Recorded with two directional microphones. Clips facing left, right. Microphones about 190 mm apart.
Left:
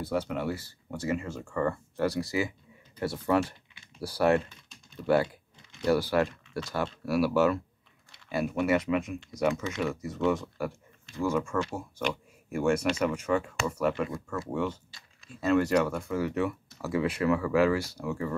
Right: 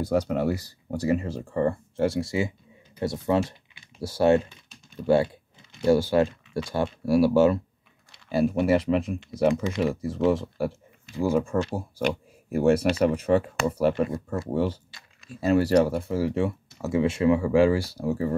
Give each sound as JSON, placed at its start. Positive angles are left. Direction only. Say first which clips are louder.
{"t": 0.0, "sound": "speech", "louder": "right 6 dB", "side_deg": -40}